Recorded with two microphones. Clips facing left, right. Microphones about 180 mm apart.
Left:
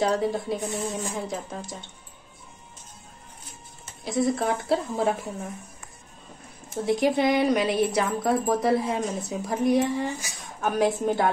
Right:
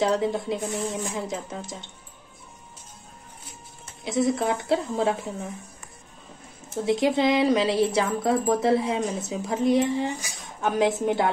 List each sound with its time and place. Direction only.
0.0 s speech: 25° right (ahead or behind)
4.0 s speech: 20° right (ahead or behind)
6.7 s speech: 20° right (ahead or behind)